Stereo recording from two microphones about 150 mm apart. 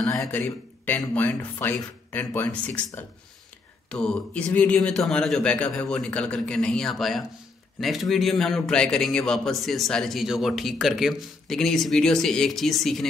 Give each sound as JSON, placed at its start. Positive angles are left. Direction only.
{"t": 0.3, "sound": "speech", "side_deg": 10}
{"t": 3.9, "sound": "a man's voice", "side_deg": 5}